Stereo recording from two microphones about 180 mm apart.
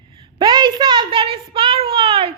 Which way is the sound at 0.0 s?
30° right (ahead or behind).